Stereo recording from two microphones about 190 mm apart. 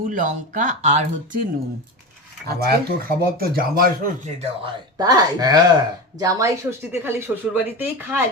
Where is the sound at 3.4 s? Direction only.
50° right (ahead or behind).